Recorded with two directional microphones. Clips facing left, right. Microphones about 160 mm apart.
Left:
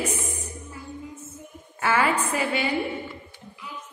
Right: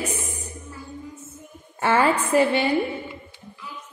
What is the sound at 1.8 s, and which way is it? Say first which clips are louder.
Speech: right 3 dB; 30° right (ahead or behind).